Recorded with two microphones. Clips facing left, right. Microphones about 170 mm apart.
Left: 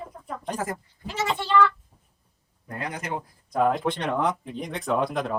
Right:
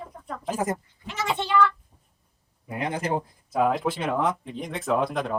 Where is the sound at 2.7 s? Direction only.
25° right (ahead or behind).